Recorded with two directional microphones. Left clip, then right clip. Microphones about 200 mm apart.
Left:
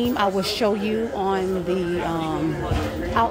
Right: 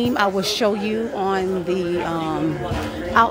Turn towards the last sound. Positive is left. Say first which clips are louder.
# right 4 dB
turn(degrees=-25)  # may be behind; listen again after turning